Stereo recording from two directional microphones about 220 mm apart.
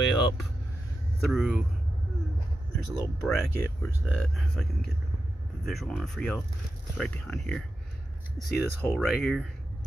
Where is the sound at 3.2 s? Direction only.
Centre (ahead or behind).